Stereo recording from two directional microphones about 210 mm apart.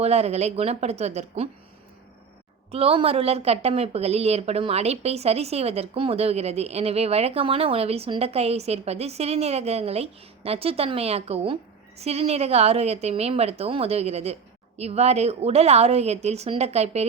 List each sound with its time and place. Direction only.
0.0 s a woman's voice: 30° right (ahead or behind)
2.7 s a woman's voice: 30° right (ahead or behind)